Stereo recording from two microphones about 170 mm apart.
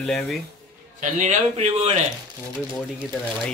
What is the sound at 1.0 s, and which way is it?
Speech, 45° right (ahead or behind).